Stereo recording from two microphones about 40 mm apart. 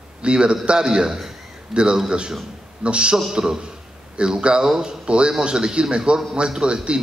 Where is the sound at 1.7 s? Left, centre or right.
Right.